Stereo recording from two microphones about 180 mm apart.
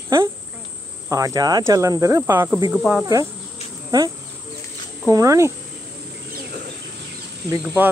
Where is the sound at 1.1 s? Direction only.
20° right (ahead or behind); by 3.0 s 5° right (ahead or behind).